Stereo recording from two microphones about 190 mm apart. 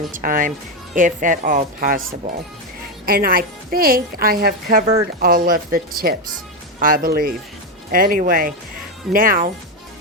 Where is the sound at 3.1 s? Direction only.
50° right (ahead or behind).